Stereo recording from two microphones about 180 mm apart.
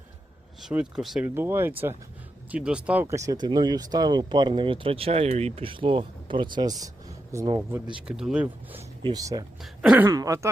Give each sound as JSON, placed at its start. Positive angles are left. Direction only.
{"t": 0.6, "sound": "speech", "side_deg": -5}
{"t": 1.3, "sound": "speech", "side_deg": -10}
{"t": 3.2, "sound": "speech", "side_deg": -20}
{"t": 8.0, "sound": "speech", "side_deg": -5}
{"t": 9.0, "sound": "speech", "side_deg": -20}
{"t": 9.6, "sound": "speech", "side_deg": -5}
{"t": 10.1, "sound": "speech", "side_deg": -20}